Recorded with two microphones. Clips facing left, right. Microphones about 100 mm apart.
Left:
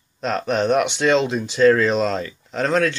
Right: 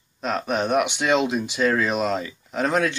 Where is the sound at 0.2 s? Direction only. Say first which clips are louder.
Left 3 dB; 5° right (ahead or behind).